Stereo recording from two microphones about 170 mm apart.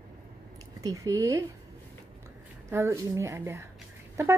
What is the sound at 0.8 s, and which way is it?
Speech, 20° right (ahead or behind).